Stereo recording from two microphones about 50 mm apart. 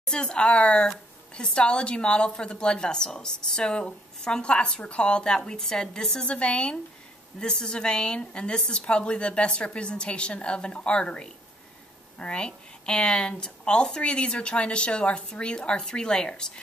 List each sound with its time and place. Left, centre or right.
0.0 s a woman's voice: centre
6.2 s speech: left